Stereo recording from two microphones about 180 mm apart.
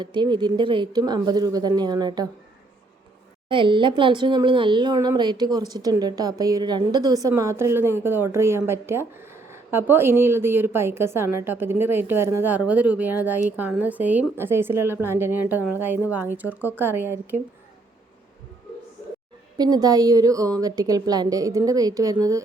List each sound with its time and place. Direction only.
0.0 s a woman's voice: 25° right (ahead or behind)
3.5 s speech: 25° right (ahead or behind); by 17.4 s 10° right (ahead or behind)
19.5 s a woman's voice: 20° right (ahead or behind)